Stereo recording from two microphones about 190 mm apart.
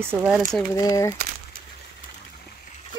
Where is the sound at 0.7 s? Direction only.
20° left (ahead or behind).